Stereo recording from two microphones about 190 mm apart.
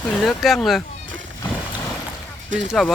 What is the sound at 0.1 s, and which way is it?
Speech, centre (ahead or behind).